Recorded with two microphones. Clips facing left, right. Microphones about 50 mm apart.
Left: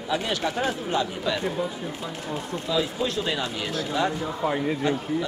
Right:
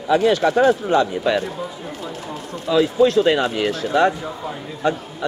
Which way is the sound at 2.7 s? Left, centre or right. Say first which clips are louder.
Right 11 dB; right.